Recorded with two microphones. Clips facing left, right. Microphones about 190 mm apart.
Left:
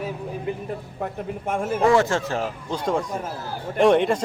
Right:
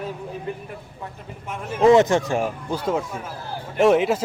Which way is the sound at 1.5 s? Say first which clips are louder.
Left 7 dB; 50° left (ahead or behind).